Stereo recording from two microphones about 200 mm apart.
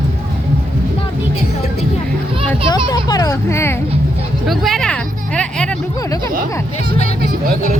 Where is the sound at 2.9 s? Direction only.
20° left (ahead or behind).